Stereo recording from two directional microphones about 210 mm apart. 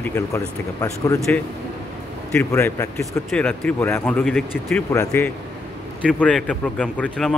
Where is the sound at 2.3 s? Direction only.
10° left (ahead or behind).